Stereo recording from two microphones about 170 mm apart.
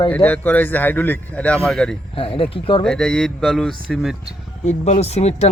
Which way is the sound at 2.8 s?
5° left (ahead or behind).